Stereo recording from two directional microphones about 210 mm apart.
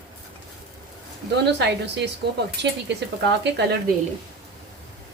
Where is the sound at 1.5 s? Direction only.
55° right (ahead or behind).